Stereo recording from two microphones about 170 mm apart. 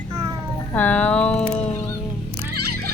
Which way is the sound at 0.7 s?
10° left (ahead or behind).